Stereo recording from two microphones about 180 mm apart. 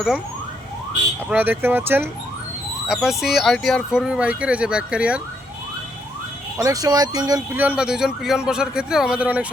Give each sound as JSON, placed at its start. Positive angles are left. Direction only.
{"t": 1.3, "sound": "speech", "side_deg": -10}
{"t": 6.6, "sound": "speech", "side_deg": -20}
{"t": 7.5, "sound": "speech", "side_deg": -10}